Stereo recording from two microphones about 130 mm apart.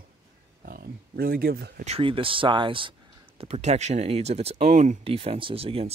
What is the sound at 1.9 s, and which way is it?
Speech, 45° right (ahead or behind).